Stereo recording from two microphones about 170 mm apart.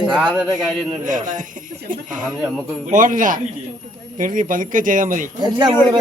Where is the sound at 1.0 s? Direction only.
50° right (ahead or behind).